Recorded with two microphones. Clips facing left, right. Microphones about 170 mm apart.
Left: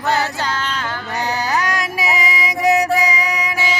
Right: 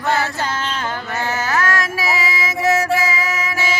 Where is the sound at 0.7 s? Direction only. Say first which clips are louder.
Right 1 dB; 20° right (ahead or behind).